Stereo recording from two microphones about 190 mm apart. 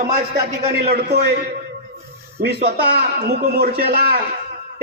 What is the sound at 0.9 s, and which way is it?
A man's voice, 55° right (ahead or behind).